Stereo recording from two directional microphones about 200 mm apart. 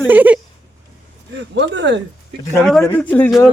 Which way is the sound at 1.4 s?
60° right (ahead or behind).